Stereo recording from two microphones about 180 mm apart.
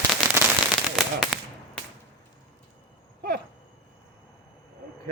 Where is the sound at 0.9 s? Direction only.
Centre (ahead or behind).